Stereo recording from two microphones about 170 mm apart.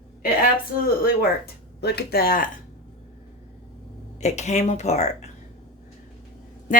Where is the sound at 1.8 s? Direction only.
70° left (ahead or behind).